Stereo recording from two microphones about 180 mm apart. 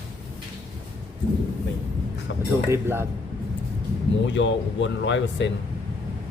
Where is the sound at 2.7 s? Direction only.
15° right (ahead or behind).